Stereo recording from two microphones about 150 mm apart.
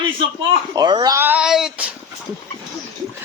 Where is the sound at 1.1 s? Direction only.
10° right (ahead or behind).